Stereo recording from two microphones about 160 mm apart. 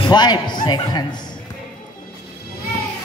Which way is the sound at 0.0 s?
25° left (ahead or behind).